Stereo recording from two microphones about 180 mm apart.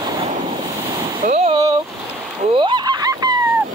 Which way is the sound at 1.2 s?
40° right (ahead or behind).